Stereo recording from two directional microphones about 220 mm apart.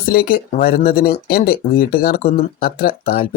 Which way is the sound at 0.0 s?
40° left (ahead or behind).